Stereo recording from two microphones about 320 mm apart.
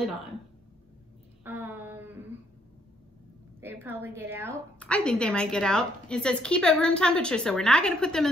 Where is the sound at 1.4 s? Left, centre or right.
Centre.